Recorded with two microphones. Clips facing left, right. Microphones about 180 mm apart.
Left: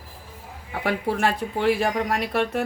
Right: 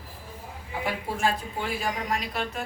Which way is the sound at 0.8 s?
70° left (ahead or behind).